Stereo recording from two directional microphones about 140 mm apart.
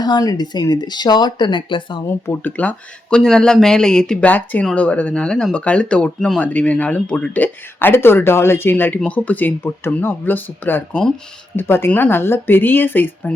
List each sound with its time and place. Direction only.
0.0 s speech: 30° left (ahead or behind)
2.0 s speech: 15° left (ahead or behind)